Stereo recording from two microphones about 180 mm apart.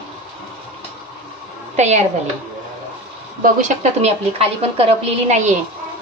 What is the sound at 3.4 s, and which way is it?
A woman's voice, 40° right (ahead or behind).